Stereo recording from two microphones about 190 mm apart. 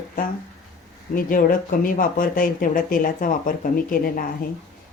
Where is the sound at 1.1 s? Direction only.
50° left (ahead or behind).